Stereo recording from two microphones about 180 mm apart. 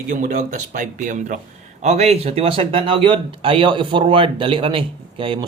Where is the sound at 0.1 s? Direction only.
45° right (ahead or behind).